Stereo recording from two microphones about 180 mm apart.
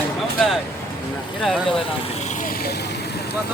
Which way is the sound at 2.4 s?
50° left (ahead or behind).